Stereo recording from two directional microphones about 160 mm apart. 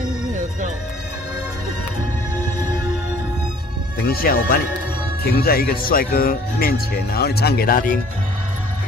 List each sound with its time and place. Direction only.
4.0 s speech: 70° left (ahead or behind)